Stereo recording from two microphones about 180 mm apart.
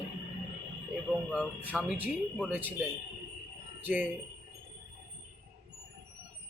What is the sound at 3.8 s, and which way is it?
Speech, 10° right (ahead or behind).